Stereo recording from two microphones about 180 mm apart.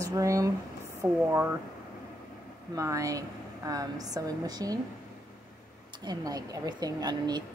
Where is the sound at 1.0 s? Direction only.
15° right (ahead or behind).